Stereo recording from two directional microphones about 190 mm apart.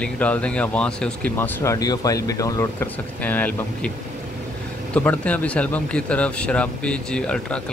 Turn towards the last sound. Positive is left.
turn(degrees=5)  # may be behind; listen again after turning